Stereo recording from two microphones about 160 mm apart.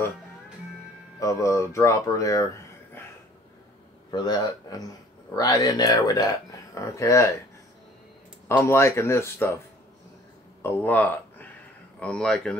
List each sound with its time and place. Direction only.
1.2 s a man's voice: 20° left (ahead or behind)
4.1 s a man's voice: 25° left (ahead or behind)
8.5 s speech: 15° left (ahead or behind)
10.6 s speech: 10° left (ahead or behind)